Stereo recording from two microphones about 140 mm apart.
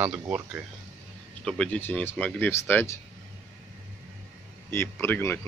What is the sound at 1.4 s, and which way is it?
Speech, 5° left (ahead or behind).